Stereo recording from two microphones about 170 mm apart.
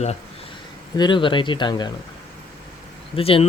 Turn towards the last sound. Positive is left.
turn(degrees=35)  # may be behind; listen again after turning